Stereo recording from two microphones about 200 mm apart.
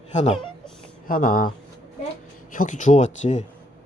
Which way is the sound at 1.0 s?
45° left (ahead or behind).